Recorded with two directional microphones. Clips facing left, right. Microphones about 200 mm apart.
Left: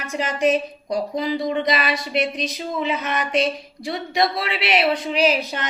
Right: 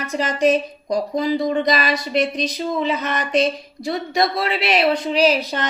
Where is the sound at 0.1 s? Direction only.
35° right (ahead or behind).